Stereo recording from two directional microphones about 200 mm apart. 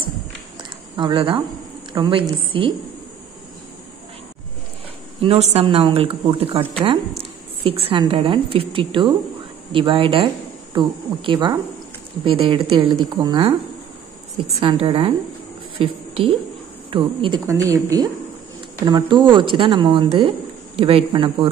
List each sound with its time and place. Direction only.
0.9 s speech: 25° right (ahead or behind)
5.2 s speech: 30° right (ahead or behind)
7.6 s a woman's voice: 30° right (ahead or behind)